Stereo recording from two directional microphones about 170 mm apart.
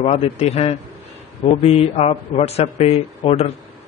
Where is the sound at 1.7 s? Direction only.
40° left (ahead or behind).